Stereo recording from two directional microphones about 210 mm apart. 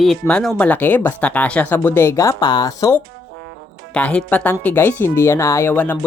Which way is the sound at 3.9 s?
5° left (ahead or behind).